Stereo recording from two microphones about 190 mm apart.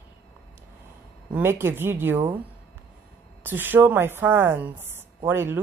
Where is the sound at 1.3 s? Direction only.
10° right (ahead or behind).